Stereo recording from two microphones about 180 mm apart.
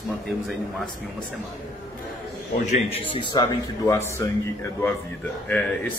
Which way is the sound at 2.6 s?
35° left (ahead or behind).